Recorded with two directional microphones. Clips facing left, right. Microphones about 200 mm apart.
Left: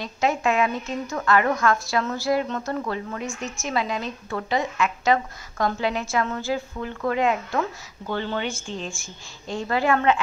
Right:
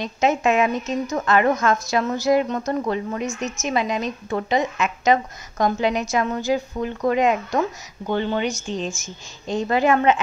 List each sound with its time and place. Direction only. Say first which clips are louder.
0.0 s a woman's voice: right 3 dB; 20° right (ahead or behind)